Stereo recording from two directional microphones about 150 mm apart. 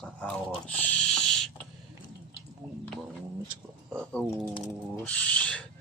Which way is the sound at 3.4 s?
15° right (ahead or behind).